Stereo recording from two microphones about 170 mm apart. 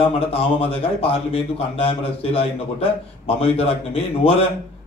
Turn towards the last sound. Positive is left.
turn(degrees=35)  # may be behind; listen again after turning